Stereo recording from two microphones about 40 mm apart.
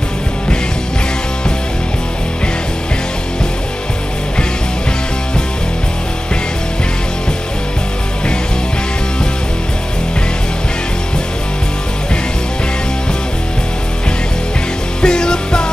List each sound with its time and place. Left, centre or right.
15.0 s music: centre